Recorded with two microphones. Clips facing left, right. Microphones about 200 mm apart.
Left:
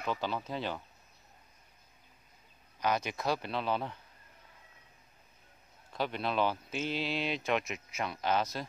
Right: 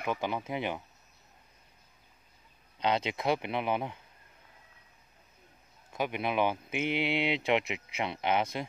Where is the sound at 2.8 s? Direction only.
25° right (ahead or behind).